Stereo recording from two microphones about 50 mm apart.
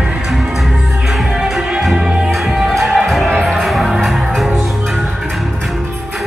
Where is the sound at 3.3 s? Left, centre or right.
Centre.